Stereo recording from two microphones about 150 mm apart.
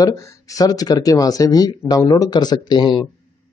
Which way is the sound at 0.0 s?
20° left (ahead or behind).